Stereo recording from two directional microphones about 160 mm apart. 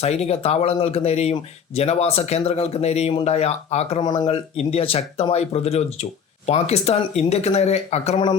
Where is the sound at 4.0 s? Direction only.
30° left (ahead or behind).